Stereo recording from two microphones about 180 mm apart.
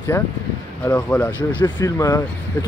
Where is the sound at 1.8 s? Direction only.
20° left (ahead or behind).